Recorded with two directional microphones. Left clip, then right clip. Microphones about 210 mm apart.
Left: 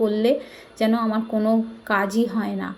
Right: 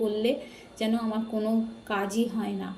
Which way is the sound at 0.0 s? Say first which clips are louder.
Left 7 dB; 20° left (ahead or behind).